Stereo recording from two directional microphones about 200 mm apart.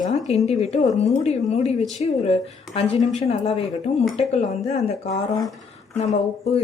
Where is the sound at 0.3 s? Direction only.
30° left (ahead or behind).